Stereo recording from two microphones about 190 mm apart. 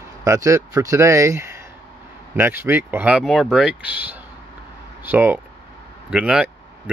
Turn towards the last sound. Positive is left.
turn(degrees=-5)  # may be behind; listen again after turning